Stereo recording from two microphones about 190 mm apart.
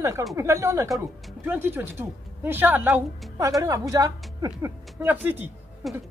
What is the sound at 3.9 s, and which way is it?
A woman's voice, 15° right (ahead or behind).